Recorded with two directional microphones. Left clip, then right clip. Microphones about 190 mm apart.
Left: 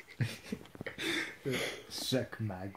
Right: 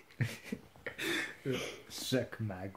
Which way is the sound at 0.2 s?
15° left (ahead or behind).